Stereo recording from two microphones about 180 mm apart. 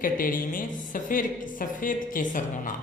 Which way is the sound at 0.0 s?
50° left (ahead or behind).